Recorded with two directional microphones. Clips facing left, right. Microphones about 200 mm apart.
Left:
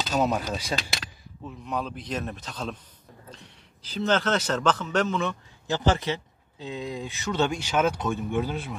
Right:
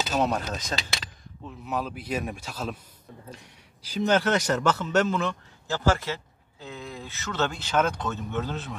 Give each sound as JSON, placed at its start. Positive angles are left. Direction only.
{"t": 0.0, "sound": "a sound", "side_deg": -5}
{"t": 0.3, "sound": "speech", "side_deg": 5}
{"t": 1.4, "sound": "a man's voice", "side_deg": -5}
{"t": 5.7, "sound": "speech", "side_deg": 20}